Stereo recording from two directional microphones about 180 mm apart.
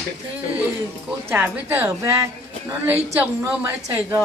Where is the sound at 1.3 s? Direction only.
10° right (ahead or behind).